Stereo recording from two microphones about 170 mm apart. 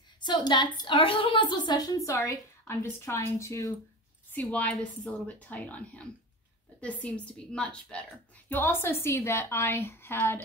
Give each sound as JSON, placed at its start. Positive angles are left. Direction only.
{"t": 0.2, "sound": "a woman's voice", "side_deg": 25}